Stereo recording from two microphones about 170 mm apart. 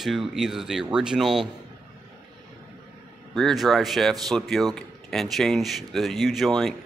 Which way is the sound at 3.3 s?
Centre (ahead or behind).